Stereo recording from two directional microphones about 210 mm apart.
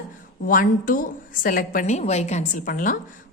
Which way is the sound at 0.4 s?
40° left (ahead or behind).